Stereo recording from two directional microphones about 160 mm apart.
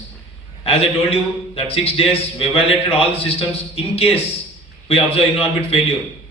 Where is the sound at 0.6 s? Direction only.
35° left (ahead or behind).